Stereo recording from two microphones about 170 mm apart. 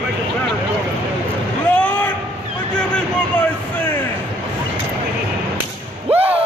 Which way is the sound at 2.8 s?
5° left (ahead or behind).